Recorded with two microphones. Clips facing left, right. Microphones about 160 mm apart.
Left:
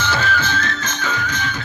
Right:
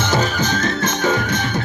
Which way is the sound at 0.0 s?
45° right (ahead or behind).